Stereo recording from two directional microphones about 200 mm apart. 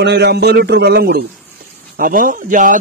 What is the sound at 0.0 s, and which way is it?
A man's voice, 55° right (ahead or behind).